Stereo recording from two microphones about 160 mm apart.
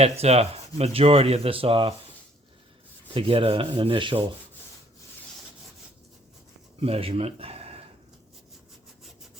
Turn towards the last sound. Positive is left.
turn(degrees=-40)  # may be behind; listen again after turning